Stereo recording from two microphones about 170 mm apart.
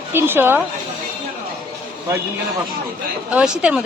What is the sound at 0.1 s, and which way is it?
Speech, 15° right (ahead or behind).